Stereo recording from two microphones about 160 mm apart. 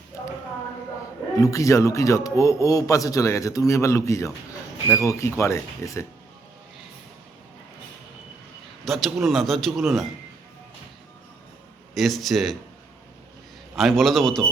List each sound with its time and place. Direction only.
1.4 s speech: 20° left (ahead or behind)
8.8 s a man's voice: centre (ahead or behind)
11.9 s a man's voice: centre (ahead or behind)
13.7 s a man's voice: centre (ahead or behind)